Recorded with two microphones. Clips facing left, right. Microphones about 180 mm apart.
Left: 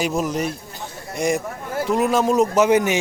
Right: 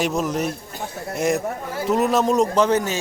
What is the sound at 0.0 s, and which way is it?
Speech, centre (ahead or behind).